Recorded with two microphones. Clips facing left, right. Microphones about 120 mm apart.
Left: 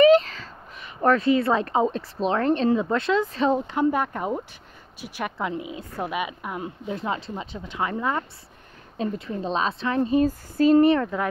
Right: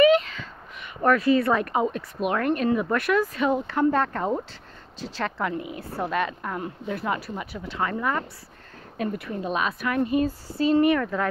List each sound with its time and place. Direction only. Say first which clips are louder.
0.0 s a sound: left 2 dB; 35° left (ahead or behind)
1.0 s speech: even; 25° left (ahead or behind)
3.6 s speech: right 1 dB; 15° left (ahead or behind)
10.2 s speech: left 4 dB; 45° left (ahead or behind)
10.9 s speech: left 2 dB; 20° left (ahead or behind)